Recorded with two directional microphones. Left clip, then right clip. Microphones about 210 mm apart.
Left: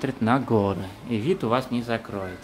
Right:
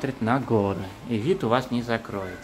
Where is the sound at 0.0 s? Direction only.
10° left (ahead or behind).